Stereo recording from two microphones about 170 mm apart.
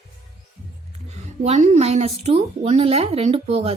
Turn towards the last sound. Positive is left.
turn(degrees=-35)  # may be behind; listen again after turning